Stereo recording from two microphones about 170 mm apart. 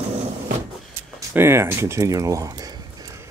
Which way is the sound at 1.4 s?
15° right (ahead or behind).